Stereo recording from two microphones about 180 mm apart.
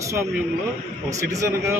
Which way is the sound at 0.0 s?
15° right (ahead or behind).